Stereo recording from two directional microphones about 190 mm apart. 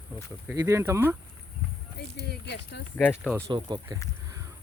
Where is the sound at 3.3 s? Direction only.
15° right (ahead or behind).